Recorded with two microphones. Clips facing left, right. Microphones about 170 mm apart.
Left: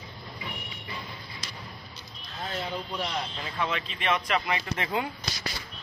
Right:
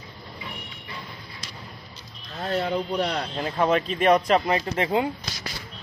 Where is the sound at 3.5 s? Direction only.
45° right (ahead or behind).